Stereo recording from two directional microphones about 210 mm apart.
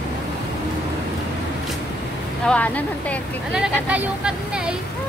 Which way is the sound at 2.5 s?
5° left (ahead or behind).